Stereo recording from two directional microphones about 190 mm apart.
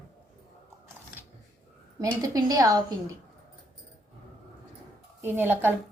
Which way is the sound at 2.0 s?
20° right (ahead or behind).